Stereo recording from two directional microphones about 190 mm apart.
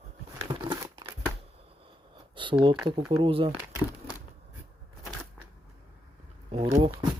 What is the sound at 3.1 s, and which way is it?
Speech, 30° right (ahead or behind).